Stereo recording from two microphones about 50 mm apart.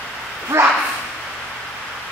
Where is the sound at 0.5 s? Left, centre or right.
Right.